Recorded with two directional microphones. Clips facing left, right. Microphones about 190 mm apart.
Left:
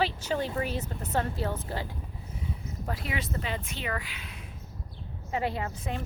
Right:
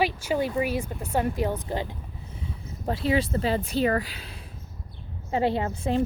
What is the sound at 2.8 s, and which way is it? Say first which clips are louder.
Speech: right 10 dB; 30° right (ahead or behind).